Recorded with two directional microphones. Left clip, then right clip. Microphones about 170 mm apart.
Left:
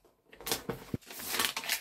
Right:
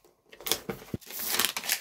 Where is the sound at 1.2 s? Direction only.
50° right (ahead or behind).